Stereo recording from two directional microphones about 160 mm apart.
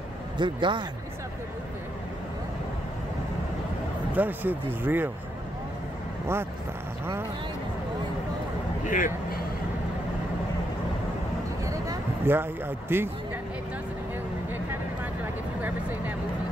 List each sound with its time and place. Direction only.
0.4 s speech: 30° right (ahead or behind)
4.1 s speech: 10° right (ahead or behind)
8.8 s speech: 55° left (ahead or behind)
11.6 s a sound: 20° right (ahead or behind)